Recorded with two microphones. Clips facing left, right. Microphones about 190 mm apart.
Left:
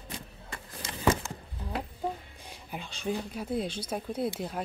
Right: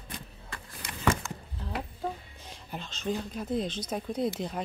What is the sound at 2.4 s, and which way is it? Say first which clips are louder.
Speech: right 1 dB; 10° left (ahead or behind).